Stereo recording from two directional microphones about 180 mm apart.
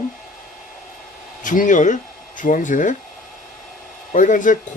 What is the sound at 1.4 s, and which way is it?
Speech, 45° left (ahead or behind).